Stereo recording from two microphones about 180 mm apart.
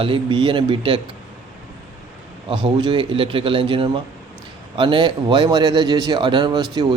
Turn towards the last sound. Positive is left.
turn(degrees=-25)  # may be behind; listen again after turning